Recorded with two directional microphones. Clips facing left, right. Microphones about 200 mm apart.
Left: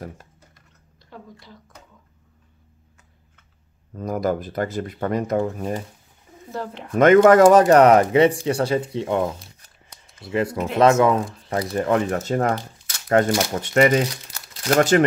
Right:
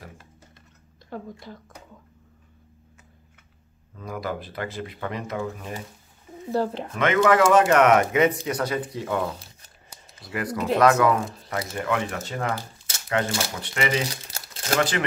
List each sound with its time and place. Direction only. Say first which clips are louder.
1.1 s speech: right 6 dB; 50° right (ahead or behind)
3.9 s speech: left 8 dB; 45° left (ahead or behind)
6.5 s speech: right 6 dB; 35° right (ahead or behind)
6.9 s speech: left 9 dB; 45° left (ahead or behind)